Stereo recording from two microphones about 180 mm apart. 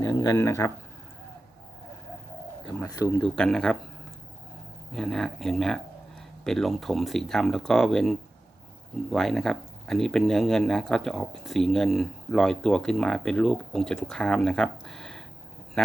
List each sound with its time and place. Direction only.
0.0 s speech: 20° left (ahead or behind)
2.7 s speech: 20° left (ahead or behind)
3.2 s speech: 5° left (ahead or behind)
4.9 s speech: centre (ahead or behind)